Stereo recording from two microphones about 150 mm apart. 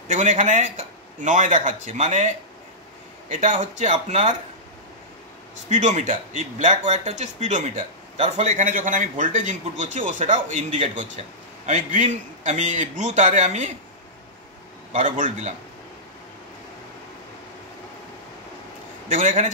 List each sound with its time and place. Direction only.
0.1 s a man's voice: 55° right (ahead or behind)
5.7 s a man's voice: 55° right (ahead or behind)
14.9 s speech: 60° right (ahead or behind)
19.0 s speech: 60° right (ahead or behind)